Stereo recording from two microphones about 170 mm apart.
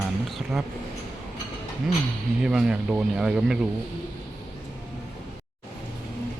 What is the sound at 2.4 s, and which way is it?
Speech, 5° right (ahead or behind).